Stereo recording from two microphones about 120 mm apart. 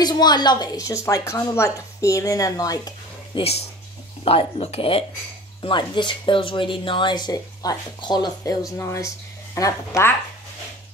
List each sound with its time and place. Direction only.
0.0 s a woman's voice: 35° left (ahead or behind)
3.3 s speech: 60° left (ahead or behind)
5.6 s speech: 40° left (ahead or behind)
8.7 s a woman's voice: 25° left (ahead or behind)